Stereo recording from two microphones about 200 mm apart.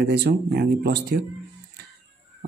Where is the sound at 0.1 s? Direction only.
55° right (ahead or behind).